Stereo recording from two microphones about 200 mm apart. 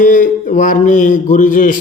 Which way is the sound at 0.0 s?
40° left (ahead or behind).